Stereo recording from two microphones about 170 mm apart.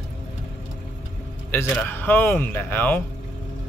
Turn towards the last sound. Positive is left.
turn(degrees=10)  # may be behind; listen again after turning